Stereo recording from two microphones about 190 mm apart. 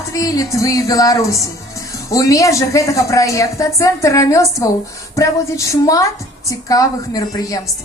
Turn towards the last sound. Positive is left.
turn(degrees=20)  # may be behind; listen again after turning